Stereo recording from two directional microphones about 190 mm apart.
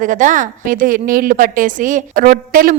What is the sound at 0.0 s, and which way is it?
A woman's voice, 45° right (ahead or behind).